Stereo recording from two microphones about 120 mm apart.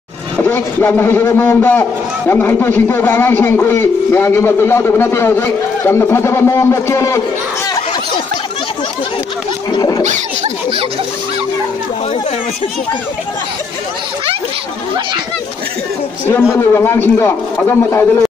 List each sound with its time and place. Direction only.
0.4 s a man's voice: 15° left (ahead or behind)
9.7 s scratch: 35° left (ahead or behind)
10.0 s speech: 90° right
16.5 s a man's voice: 20° left (ahead or behind)